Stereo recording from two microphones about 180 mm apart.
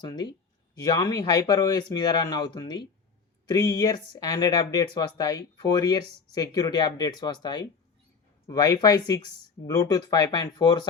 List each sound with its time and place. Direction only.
0.0 s speech: 20° left (ahead or behind)